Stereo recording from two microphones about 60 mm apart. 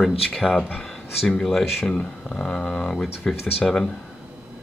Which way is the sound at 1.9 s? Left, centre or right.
Centre.